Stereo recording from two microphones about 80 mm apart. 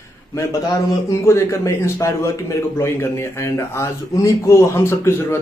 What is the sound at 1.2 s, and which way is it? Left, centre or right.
A man's voice, left.